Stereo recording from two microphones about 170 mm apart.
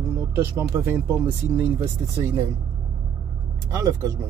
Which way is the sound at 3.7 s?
20° right (ahead or behind).